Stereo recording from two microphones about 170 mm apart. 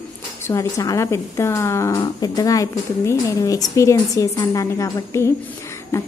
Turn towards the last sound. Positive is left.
turn(degrees=15)  # may be behind; listen again after turning